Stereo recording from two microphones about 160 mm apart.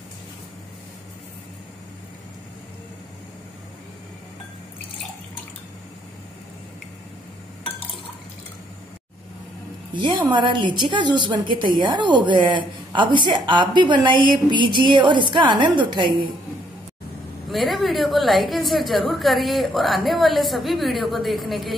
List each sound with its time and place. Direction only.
9.9 s a woman's voice: 30° right (ahead or behind)
17.5 s a woman's voice: centre (ahead or behind)